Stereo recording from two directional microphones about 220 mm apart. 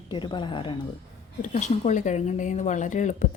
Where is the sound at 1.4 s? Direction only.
35° left (ahead or behind).